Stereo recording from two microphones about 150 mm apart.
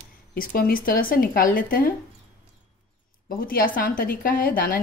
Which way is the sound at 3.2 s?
70° left (ahead or behind).